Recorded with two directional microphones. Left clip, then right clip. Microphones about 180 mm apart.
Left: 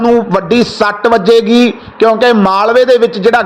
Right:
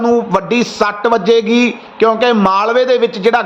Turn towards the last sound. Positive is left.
turn(degrees=15)  # may be behind; listen again after turning